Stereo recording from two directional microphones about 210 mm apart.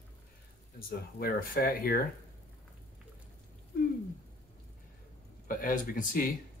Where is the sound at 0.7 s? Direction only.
45° left (ahead or behind).